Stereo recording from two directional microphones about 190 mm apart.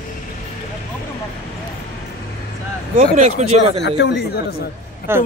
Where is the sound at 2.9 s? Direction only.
40° right (ahead or behind).